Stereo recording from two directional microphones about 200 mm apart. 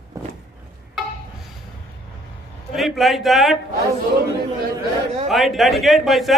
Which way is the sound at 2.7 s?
Centre (ahead or behind).